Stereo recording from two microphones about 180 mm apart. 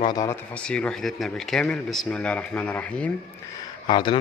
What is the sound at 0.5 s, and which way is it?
Speech, 5° left (ahead or behind).